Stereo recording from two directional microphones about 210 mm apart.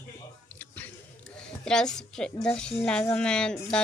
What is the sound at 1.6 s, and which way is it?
A woman's voice, 5° left (ahead or behind).